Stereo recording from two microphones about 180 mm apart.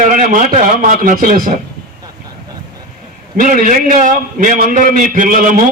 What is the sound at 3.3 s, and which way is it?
A man's voice, 45° right (ahead or behind).